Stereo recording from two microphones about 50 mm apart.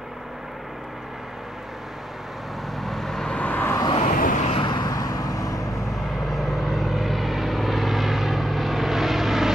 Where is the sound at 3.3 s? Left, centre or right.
Left.